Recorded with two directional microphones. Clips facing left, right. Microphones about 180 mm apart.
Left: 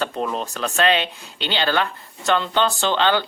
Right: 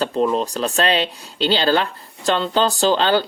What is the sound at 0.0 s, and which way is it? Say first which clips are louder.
Speech: right 6 dB; 35° right (ahead or behind).